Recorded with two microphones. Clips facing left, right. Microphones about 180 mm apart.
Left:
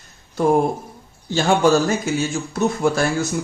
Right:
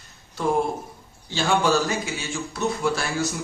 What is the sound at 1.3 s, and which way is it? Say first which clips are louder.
A man's voice: left 5 dB; 45° left (ahead or behind).